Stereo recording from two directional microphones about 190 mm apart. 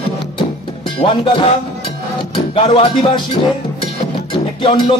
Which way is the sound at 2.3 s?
25° left (ahead or behind).